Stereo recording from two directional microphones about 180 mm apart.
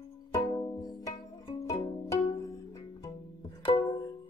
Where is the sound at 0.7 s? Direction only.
20° left (ahead or behind).